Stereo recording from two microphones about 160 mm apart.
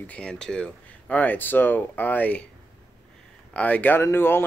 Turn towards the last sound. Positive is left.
turn(degrees=15)  # may be behind; listen again after turning